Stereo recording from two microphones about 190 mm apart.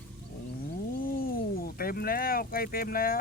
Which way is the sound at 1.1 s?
50° left (ahead or behind).